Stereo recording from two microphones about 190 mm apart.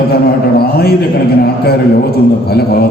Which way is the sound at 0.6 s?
55° left (ahead or behind).